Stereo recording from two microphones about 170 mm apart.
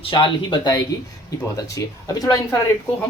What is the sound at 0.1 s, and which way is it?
Speech, 25° left (ahead or behind).